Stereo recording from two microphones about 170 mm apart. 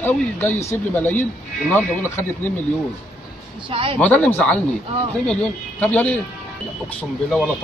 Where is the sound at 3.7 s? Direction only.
30° right (ahead or behind).